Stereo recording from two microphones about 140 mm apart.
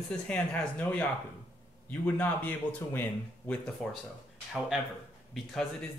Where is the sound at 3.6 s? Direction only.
5° left (ahead or behind).